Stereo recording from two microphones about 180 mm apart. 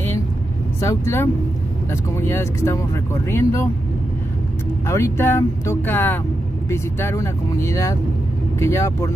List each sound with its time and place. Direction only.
0.7 s speech: 15° left (ahead or behind)
4.8 s speech: 15° left (ahead or behind)